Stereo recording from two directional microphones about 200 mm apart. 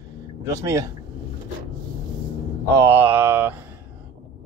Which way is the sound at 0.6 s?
15° right (ahead or behind).